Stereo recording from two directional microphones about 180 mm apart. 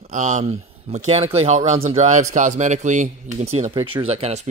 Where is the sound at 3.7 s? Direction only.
30° right (ahead or behind).